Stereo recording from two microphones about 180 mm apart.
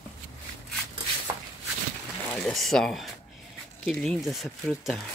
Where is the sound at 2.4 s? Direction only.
Centre (ahead or behind).